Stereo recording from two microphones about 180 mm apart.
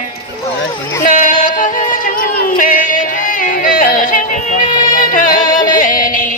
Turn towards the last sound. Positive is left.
turn(degrees=50)  # may be behind; listen again after turning